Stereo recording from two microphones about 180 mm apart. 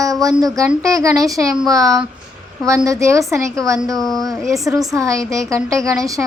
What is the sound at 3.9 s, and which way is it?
Speech, centre (ahead or behind).